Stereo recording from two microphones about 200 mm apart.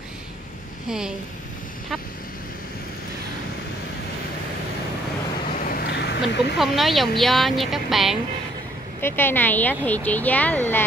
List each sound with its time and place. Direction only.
0.8 s a woman's voice: 5° right (ahead or behind)
5.6 s a sound: 45° left (ahead or behind)
6.6 s a woman's voice: centre (ahead or behind)
9.0 s speech: 10° left (ahead or behind)